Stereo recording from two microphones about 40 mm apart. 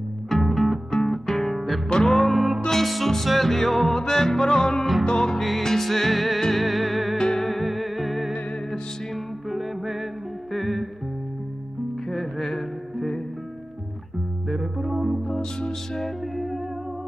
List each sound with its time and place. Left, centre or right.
0.3 s music: centre
5.6 s music: centre
7.2 s music: centre
7.4 s music: centre
12.1 s music: centre
14.5 s music: centre
16.0 s music: centre